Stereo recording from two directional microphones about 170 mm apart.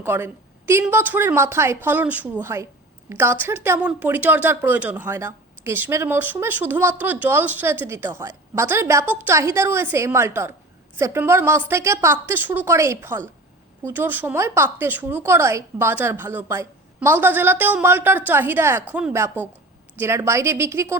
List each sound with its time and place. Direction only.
0.0 s speech: 15° right (ahead or behind)